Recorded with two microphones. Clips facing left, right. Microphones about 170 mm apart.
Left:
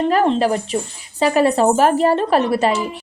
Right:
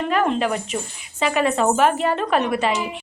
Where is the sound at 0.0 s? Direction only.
35° left (ahead or behind).